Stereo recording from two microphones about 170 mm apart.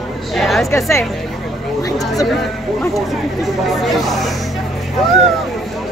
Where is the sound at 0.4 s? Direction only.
Centre (ahead or behind).